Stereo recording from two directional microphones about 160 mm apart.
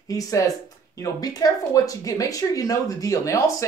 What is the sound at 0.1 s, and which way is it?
Speech, 20° left (ahead or behind).